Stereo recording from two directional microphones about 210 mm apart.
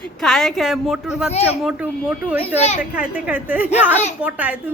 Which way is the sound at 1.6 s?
5° right (ahead or behind).